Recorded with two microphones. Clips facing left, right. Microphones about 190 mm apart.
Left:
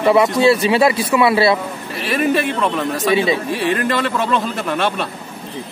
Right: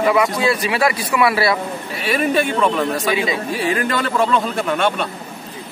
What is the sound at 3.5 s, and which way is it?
A man's voice, centre (ahead or behind).